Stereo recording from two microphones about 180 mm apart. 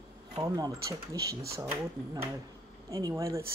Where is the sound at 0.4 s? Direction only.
20° right (ahead or behind).